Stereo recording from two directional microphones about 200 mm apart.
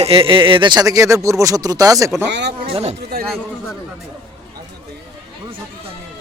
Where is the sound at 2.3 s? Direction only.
60° right (ahead or behind).